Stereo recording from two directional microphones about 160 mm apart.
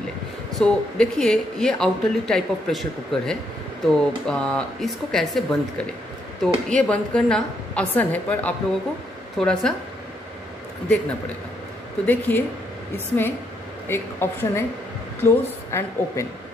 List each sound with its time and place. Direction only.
0.6 s a woman's voice: 5° left (ahead or behind)
12.1 s a woman's voice: 10° left (ahead or behind)
13.8 s a woman's voice: 15° left (ahead or behind)